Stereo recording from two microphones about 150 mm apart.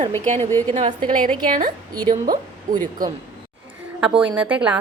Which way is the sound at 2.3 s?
65° right (ahead or behind).